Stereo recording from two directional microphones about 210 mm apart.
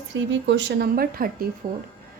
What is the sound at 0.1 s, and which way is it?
Speech, 60° right (ahead or behind).